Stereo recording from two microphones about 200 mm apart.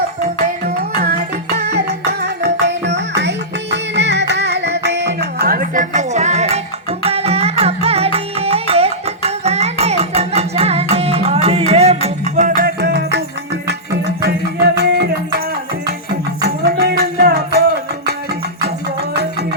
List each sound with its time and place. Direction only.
0.3 s music: 50° right (ahead or behind)
16.4 s music: 50° right (ahead or behind)